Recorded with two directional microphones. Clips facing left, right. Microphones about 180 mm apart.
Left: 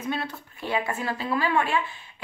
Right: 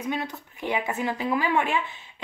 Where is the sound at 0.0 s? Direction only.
15° right (ahead or behind).